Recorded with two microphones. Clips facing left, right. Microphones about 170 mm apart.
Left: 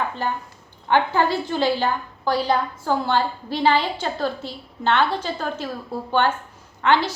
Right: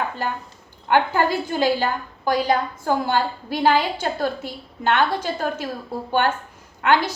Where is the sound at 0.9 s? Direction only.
10° right (ahead or behind).